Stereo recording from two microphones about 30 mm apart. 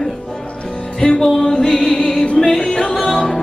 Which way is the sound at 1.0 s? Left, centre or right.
Centre.